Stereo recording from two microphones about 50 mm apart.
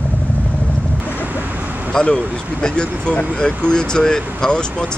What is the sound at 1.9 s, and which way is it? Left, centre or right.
Speech, centre.